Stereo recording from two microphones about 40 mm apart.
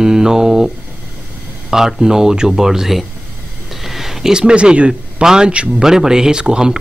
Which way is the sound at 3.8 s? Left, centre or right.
Centre.